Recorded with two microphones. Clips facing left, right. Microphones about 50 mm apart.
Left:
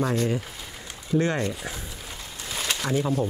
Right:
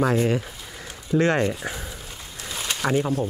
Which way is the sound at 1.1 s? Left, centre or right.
Right.